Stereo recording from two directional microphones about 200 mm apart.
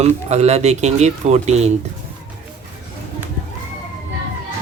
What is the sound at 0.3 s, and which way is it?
Speech, 35° right (ahead or behind).